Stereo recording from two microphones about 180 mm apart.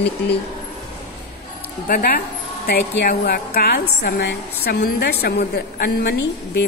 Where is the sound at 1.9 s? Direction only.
55° left (ahead or behind).